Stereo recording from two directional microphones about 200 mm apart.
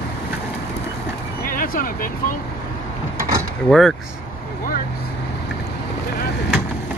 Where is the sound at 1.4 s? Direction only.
45° left (ahead or behind).